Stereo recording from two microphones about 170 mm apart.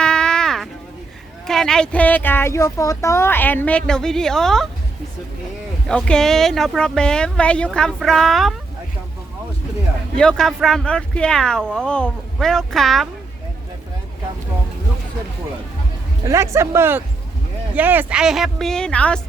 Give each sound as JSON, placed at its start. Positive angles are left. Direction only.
{"t": 0.0, "sound": "a sound", "side_deg": 5}
{"t": 1.5, "sound": "speech", "side_deg": 5}
{"t": 5.9, "sound": "speech", "side_deg": 5}
{"t": 10.2, "sound": "speech", "side_deg": 5}
{"t": 16.2, "sound": "speech", "side_deg": -15}